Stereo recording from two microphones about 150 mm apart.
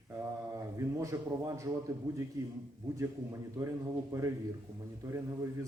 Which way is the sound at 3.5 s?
20° right (ahead or behind).